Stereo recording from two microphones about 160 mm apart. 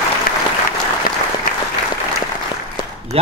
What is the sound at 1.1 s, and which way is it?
Applause, 65° left (ahead or behind).